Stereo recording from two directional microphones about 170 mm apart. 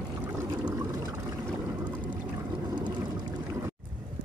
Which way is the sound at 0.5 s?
25° right (ahead or behind).